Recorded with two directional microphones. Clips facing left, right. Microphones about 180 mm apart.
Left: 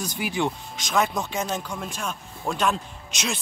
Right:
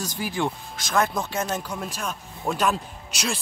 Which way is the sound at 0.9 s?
Centre (ahead or behind).